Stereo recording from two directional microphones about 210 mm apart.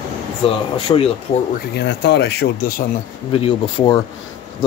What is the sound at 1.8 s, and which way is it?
Speech, 55° left (ahead or behind).